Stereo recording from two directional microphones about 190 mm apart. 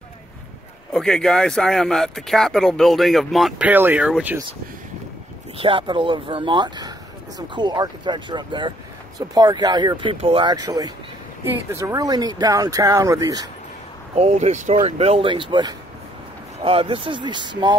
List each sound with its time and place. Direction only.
0.9 s speech: 5° left (ahead or behind)
5.6 s speech: 25° right (ahead or behind)
14.1 s speech: 35° right (ahead or behind)